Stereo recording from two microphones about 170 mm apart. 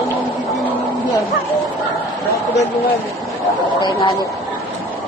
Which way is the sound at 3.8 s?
25° left (ahead or behind).